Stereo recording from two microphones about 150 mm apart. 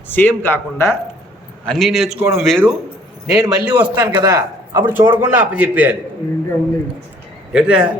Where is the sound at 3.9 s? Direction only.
25° right (ahead or behind).